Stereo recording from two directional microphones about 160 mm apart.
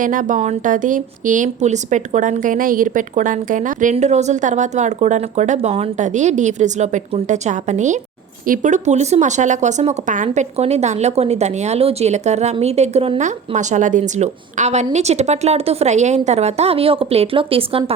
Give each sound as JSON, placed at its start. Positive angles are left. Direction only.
{"t": 0.0, "sound": "a woman's voice", "side_deg": -55}